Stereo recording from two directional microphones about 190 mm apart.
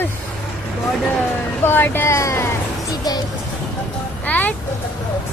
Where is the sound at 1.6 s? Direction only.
10° left (ahead or behind).